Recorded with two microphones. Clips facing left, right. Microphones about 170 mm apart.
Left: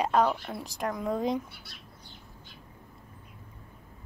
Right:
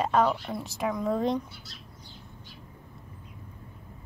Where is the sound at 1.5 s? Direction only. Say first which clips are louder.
Right 2 dB; 60° left (ahead or behind).